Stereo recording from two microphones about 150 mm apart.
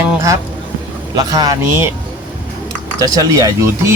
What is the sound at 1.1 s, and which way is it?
Speech, 25° right (ahead or behind).